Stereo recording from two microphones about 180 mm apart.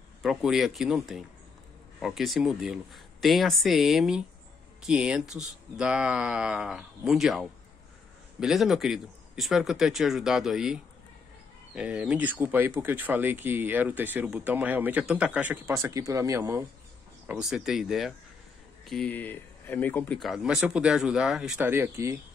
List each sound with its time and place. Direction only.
0.2 s speech: centre (ahead or behind)
17.3 s speech: 5° right (ahead or behind)